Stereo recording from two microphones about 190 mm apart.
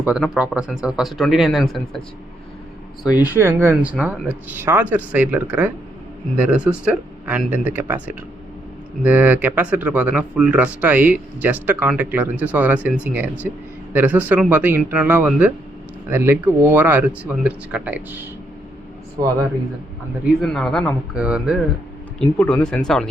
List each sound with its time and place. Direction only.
0.0 s speech: 5° right (ahead or behind)
3.2 s speech: 10° right (ahead or behind)
19.2 s speech: 20° right (ahead or behind)
20.4 s speech: centre (ahead or behind)
22.4 s speech: 10° left (ahead or behind)